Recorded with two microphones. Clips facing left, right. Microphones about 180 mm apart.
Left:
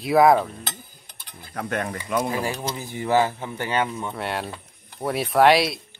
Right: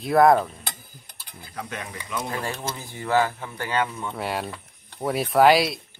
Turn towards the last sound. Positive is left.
turn(degrees=0)  # may be behind; listen again after turning